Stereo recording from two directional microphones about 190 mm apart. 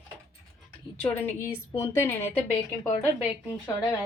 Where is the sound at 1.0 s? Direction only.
10° left (ahead or behind).